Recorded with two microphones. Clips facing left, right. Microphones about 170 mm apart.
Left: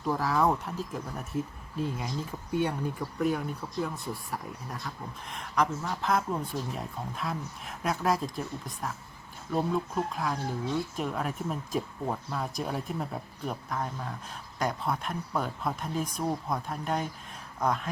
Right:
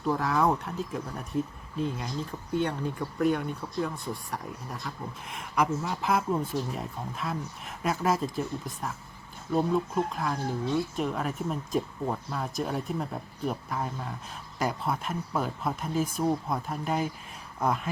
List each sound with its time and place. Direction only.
0.0 s speech: centre (ahead or behind)